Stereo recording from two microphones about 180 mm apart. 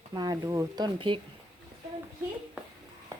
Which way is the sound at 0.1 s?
20° right (ahead or behind).